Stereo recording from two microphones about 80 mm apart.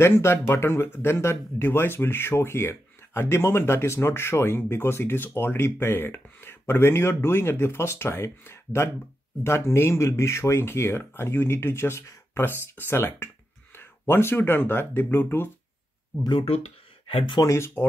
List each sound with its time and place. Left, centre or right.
0.0 s speech: left
17.4 s speech: left